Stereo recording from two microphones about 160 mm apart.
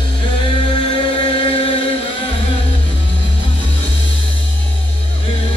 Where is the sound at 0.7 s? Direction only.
30° left (ahead or behind).